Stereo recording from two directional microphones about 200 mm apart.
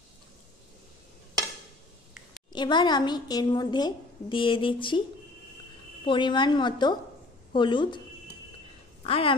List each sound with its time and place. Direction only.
2.5 s a woman's voice: 20° left (ahead or behind)
6.0 s a woman's voice: 25° left (ahead or behind)
9.0 s speech: 30° left (ahead or behind)